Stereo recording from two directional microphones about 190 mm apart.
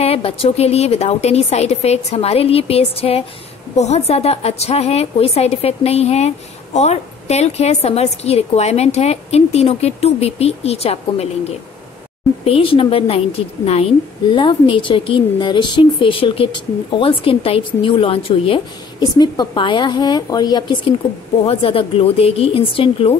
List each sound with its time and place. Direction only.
0.0 s a woman's voice: 30° left (ahead or behind)
14.3 s a woman's voice: 25° left (ahead or behind)